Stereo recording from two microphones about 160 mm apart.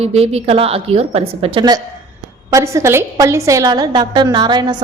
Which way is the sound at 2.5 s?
20° right (ahead or behind).